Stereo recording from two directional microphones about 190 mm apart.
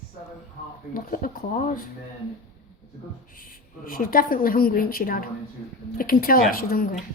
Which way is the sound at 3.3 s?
45° left (ahead or behind).